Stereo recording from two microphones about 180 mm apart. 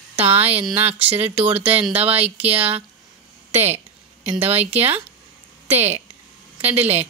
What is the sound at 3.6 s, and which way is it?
Speech, 35° right (ahead or behind).